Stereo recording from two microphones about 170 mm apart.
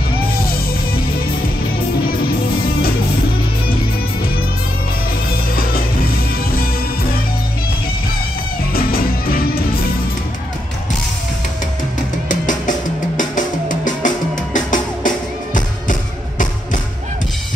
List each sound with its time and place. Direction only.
8.7 s music: 60° left (ahead or behind)
12.3 s music: 50° left (ahead or behind)